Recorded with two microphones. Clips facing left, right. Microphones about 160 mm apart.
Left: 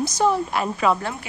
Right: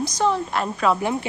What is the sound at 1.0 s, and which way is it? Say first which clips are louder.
Speech: right 6 dB; 20° right (ahead or behind).